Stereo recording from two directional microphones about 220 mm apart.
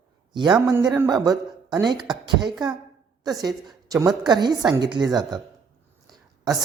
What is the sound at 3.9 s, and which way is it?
A man's voice, 15° right (ahead or behind).